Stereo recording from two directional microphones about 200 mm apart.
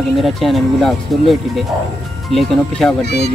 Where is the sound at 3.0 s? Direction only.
55° left (ahead or behind).